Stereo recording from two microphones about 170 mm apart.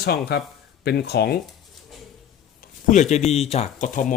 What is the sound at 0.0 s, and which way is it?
Speech, 70° left (ahead or behind).